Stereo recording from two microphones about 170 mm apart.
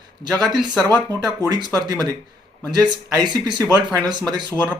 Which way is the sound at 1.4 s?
25° right (ahead or behind).